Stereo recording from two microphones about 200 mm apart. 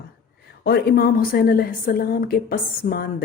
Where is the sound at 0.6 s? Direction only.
50° left (ahead or behind).